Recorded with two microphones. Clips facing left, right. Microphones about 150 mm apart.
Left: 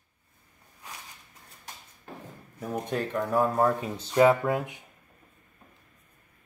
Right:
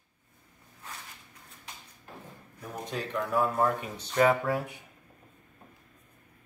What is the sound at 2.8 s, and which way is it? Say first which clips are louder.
Speech: left 2 dB; 50° left (ahead or behind).